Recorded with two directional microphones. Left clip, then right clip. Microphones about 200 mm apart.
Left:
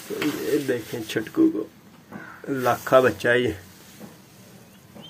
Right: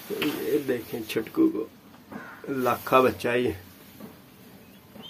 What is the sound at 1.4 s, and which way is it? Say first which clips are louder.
Speech: left 3 dB; 10° left (ahead or behind).